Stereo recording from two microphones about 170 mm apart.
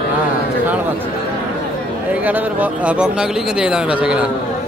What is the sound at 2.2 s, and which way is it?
Speech, 10° right (ahead or behind).